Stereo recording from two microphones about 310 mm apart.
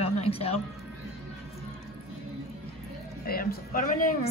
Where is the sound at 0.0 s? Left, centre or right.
Centre.